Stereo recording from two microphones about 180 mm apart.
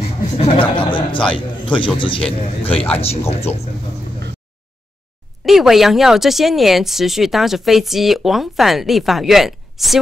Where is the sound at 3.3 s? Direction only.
35° left (ahead or behind).